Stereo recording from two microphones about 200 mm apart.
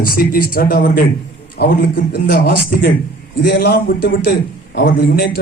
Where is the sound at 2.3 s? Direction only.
50° left (ahead or behind).